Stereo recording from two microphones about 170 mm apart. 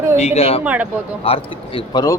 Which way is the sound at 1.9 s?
20° left (ahead or behind).